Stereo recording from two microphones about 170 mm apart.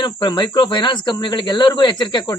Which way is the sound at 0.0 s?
25° left (ahead or behind).